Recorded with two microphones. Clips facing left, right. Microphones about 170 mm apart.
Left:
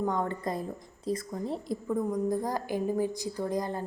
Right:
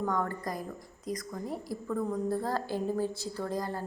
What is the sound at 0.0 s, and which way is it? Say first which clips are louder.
A woman's voice: left 2 dB; 20° left (ahead or behind).